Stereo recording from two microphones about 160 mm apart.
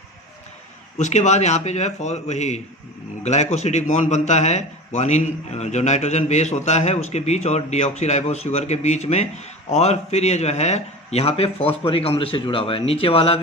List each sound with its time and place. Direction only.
0.9 s a man's voice: 45° left (ahead or behind)